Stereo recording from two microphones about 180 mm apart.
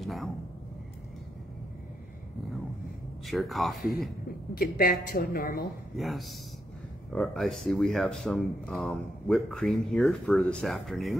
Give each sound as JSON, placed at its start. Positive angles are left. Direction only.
{"t": 0.0, "sound": "speech", "side_deg": 0}
{"t": 3.3, "sound": "speech", "side_deg": 0}
{"t": 4.6, "sound": "a woman's voice", "side_deg": 55}
{"t": 5.9, "sound": "speech", "side_deg": 0}